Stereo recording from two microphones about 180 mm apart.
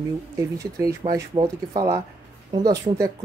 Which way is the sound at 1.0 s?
25° right (ahead or behind).